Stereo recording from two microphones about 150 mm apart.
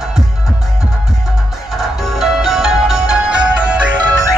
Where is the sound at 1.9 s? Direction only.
Centre (ahead or behind).